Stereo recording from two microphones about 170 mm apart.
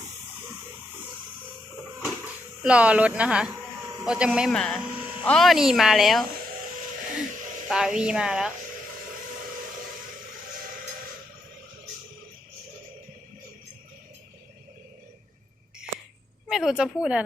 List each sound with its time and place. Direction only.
2.6 s speech: 5° right (ahead or behind)
3.5 s a sound: 20° right (ahead or behind)
4.0 s speech: 5° right (ahead or behind)
7.7 s speech: 5° right (ahead or behind)
16.5 s speech: 5° right (ahead or behind)